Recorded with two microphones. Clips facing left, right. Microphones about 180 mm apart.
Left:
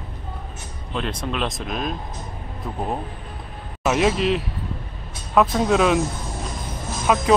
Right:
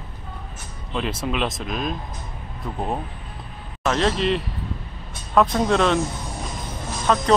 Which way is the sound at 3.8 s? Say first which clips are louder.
Left 2 dB; 10° left (ahead or behind).